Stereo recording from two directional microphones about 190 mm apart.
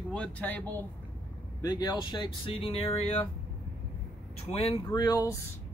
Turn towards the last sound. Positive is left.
turn(degrees=20)  # may be behind; listen again after turning